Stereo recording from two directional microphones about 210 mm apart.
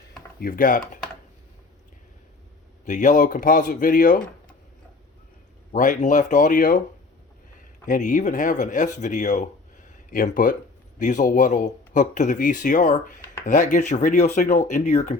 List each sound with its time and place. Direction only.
0.3 s speech: 45° left (ahead or behind)
2.8 s speech: 35° left (ahead or behind)
5.7 s speech: 35° left (ahead or behind)
7.9 s speech: 35° left (ahead or behind)